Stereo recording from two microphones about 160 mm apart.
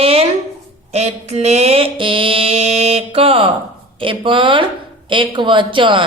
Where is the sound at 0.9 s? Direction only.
40° right (ahead or behind).